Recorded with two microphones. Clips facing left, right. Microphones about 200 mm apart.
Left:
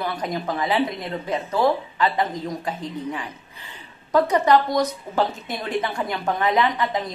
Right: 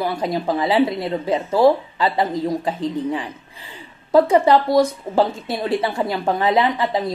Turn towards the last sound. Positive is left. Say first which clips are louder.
# right 3 dB
turn(degrees=-30)  # may be behind; listen again after turning